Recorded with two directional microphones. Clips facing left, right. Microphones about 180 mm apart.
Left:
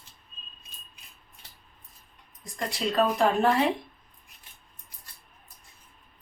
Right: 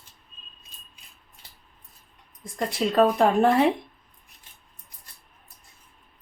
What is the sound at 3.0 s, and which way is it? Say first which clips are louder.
Speech: right 4 dB; 50° right (ahead or behind).